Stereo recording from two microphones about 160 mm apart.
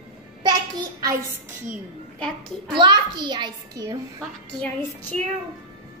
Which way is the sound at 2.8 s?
30° right (ahead or behind).